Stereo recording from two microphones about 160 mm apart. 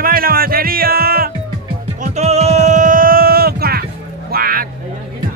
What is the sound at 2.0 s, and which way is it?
Music, 45° right (ahead or behind).